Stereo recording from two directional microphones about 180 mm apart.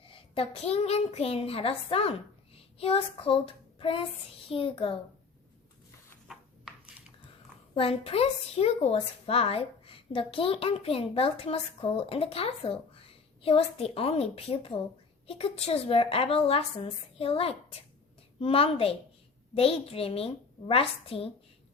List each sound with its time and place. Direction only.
0.0 s a woman's voice: 30° left (ahead or behind)
2.7 s child singing: 35° left (ahead or behind)
4.4 s a woman's voice: 30° left (ahead or behind)
6.2 s a sound: centre (ahead or behind)
7.8 s a woman's voice: 30° left (ahead or behind)